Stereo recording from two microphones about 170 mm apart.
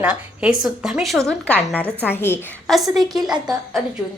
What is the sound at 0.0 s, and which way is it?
A woman's voice, 5° right (ahead or behind).